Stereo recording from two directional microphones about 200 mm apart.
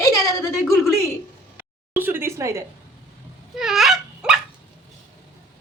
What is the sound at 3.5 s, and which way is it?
Dog, centre (ahead or behind).